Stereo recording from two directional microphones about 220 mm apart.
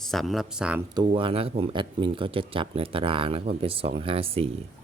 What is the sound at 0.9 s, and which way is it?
Speech, 25° right (ahead or behind).